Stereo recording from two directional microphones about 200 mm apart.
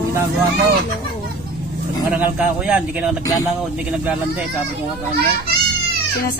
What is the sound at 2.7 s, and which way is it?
Speech, 5° right (ahead or behind).